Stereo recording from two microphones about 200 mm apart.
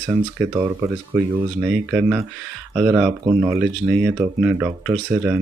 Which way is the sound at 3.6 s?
5° right (ahead or behind).